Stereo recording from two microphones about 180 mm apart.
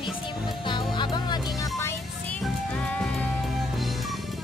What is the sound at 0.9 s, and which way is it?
Music, 25° left (ahead or behind).